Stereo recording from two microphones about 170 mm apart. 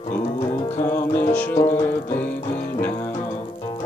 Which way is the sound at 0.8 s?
15° left (ahead or behind).